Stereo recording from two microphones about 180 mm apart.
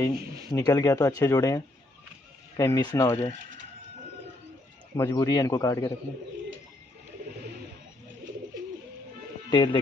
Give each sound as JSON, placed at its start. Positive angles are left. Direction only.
{"t": 0.5, "sound": "speech", "side_deg": 20}
{"t": 4.9, "sound": "speech", "side_deg": 20}
{"t": 9.5, "sound": "speech", "side_deg": 25}